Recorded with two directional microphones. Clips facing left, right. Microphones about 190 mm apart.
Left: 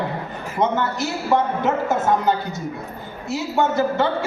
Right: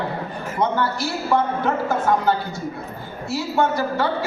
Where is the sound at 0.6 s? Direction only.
20° left (ahead or behind).